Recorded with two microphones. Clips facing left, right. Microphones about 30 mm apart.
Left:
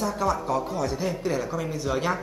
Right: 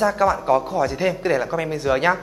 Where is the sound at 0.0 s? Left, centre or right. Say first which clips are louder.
Right 7 dB; right.